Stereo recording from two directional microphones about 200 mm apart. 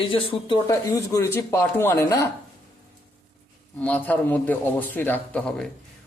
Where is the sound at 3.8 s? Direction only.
5° left (ahead or behind).